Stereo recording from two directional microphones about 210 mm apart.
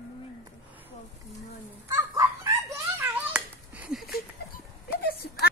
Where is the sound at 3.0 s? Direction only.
5° right (ahead or behind).